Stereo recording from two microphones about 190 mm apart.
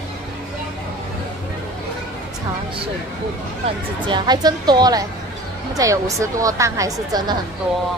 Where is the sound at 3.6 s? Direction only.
25° right (ahead or behind).